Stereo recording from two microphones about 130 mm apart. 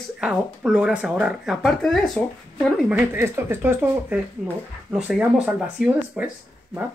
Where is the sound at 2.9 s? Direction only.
15° right (ahead or behind).